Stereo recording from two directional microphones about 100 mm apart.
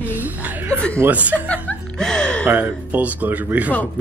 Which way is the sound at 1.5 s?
15° left (ahead or behind).